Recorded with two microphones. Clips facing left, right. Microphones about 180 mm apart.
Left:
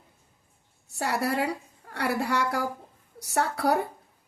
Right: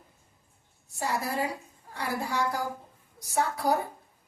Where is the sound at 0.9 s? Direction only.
70° left (ahead or behind).